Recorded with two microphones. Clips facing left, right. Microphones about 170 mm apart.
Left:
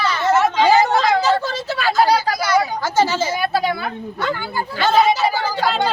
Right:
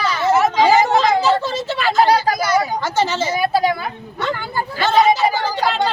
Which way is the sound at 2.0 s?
20° right (ahead or behind).